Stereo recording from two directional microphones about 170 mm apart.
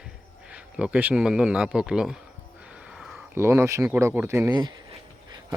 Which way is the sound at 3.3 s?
15° right (ahead or behind).